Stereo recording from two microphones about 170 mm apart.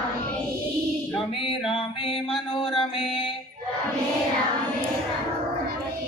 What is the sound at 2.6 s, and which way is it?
Mantra, 30° left (ahead or behind).